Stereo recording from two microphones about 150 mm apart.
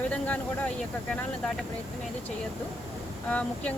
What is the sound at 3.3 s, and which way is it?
Speech, 10° left (ahead or behind).